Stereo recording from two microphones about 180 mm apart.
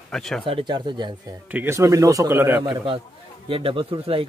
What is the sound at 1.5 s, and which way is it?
Speech, 15° right (ahead or behind).